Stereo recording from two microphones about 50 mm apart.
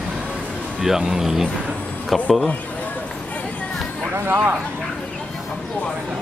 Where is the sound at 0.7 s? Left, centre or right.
Centre.